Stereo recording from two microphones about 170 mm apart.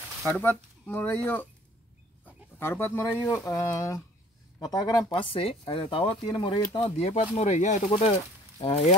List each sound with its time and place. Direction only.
0.3 s speech: 10° left (ahead or behind); by 8.1 s 40° left (ahead or behind)
8.5 s speech: 30° left (ahead or behind)